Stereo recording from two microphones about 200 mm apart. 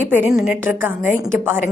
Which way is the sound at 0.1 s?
5° right (ahead or behind).